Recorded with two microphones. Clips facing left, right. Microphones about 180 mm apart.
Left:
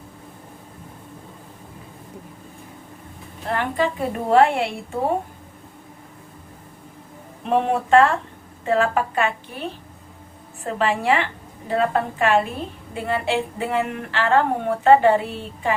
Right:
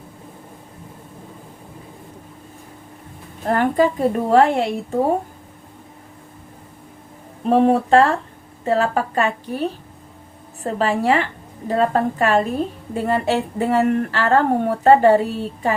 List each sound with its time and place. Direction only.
3.4 s a woman's voice: 45° right (ahead or behind)
7.4 s a woman's voice: 35° right (ahead or behind)